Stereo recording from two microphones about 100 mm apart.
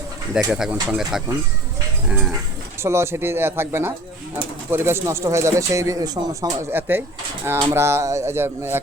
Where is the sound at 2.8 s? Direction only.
25° right (ahead or behind).